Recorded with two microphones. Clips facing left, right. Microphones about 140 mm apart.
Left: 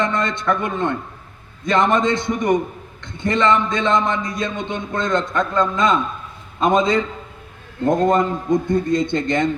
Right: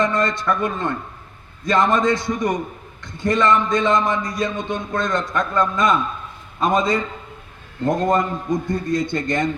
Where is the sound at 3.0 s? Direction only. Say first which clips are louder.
Right 1 dB; 10° right (ahead or behind).